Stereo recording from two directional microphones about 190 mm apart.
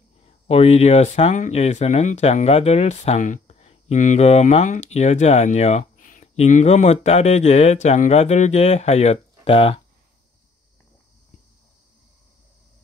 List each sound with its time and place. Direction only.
0.2 s speech: 35° left (ahead or behind)